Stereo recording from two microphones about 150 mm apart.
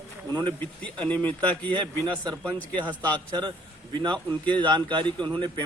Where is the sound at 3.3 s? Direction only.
30° right (ahead or behind).